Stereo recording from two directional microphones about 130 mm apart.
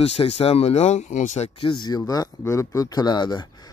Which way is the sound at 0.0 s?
50° left (ahead or behind).